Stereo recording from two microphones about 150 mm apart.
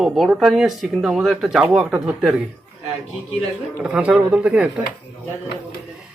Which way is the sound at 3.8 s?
5° right (ahead or behind).